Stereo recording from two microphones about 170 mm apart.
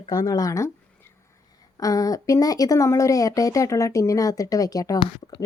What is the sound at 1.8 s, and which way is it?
Speech, 20° left (ahead or behind).